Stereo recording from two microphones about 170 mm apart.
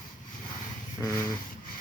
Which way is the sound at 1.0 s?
20° left (ahead or behind).